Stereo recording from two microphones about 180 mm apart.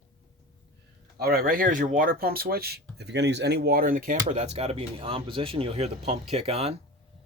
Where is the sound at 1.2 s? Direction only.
55° right (ahead or behind).